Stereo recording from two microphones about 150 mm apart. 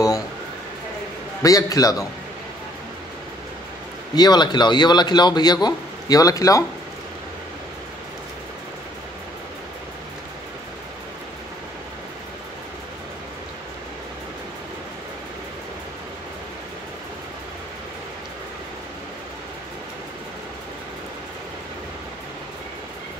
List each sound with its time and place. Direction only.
1.4 s a man's voice: 25° left (ahead or behind)
4.1 s a man's voice: 25° left (ahead or behind)